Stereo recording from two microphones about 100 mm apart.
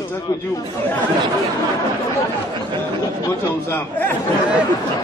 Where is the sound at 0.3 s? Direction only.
30° left (ahead or behind).